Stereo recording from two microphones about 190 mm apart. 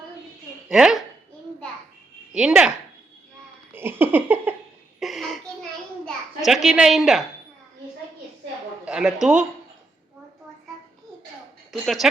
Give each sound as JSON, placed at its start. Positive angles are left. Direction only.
{"t": 0.7, "sound": "speech", "side_deg": 0}
{"t": 2.3, "sound": "speech", "side_deg": -5}
{"t": 3.7, "sound": "giggle", "side_deg": -10}
{"t": 4.9, "sound": "a sound", "side_deg": 0}
{"t": 6.1, "sound": "a child's voice", "side_deg": 0}
{"t": 8.8, "sound": "speech", "side_deg": -5}
{"t": 11.7, "sound": "speech", "side_deg": 0}